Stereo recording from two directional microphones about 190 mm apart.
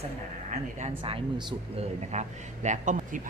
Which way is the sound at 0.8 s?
30° right (ahead or behind).